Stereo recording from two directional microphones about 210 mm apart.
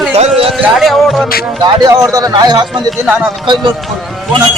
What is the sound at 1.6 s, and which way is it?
Speech, 20° right (ahead or behind).